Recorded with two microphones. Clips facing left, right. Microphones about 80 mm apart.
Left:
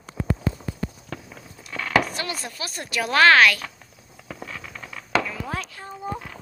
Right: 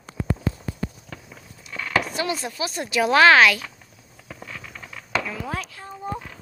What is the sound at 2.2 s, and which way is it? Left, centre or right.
Speech, centre.